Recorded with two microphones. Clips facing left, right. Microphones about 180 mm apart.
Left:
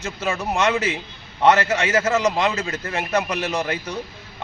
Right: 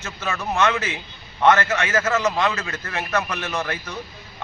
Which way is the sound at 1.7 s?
30° left (ahead or behind).